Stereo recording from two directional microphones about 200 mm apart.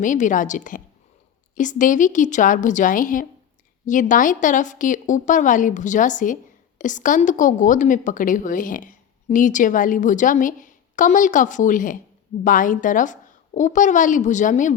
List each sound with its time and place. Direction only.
0.0 s speech: 40° left (ahead or behind)